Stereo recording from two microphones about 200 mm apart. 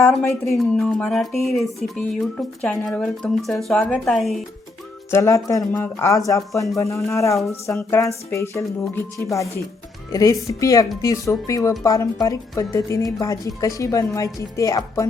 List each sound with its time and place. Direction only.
0.0 s speech: 5° left (ahead or behind)
5.1 s a woman's voice: 15° left (ahead or behind)